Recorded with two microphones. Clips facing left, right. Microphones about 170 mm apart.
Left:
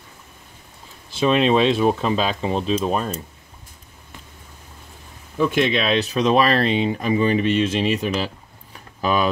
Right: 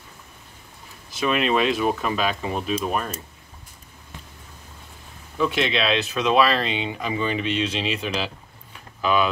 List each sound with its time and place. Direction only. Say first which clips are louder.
1.1 s speech: left 5 dB; 30° left (ahead or behind)
5.5 s speech: left 4 dB; 50° left (ahead or behind)